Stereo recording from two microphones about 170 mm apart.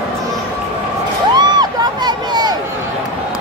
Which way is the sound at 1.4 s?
25° right (ahead or behind).